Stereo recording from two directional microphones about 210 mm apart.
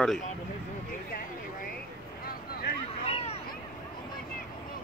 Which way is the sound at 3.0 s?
30° left (ahead or behind).